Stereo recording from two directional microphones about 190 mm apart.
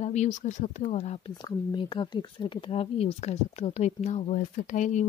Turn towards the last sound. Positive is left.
turn(degrees=40)  # may be behind; listen again after turning